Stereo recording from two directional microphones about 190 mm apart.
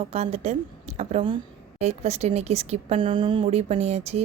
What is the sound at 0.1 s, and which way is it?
Speech, 35° right (ahead or behind).